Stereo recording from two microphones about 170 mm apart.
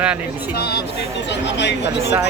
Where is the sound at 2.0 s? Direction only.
15° right (ahead or behind).